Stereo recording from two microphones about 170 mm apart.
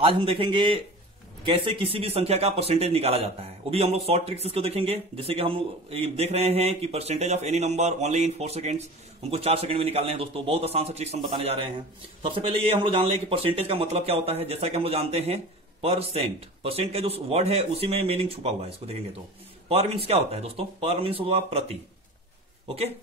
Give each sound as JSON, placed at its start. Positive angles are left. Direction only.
{"t": 0.0, "sound": "speech", "side_deg": -30}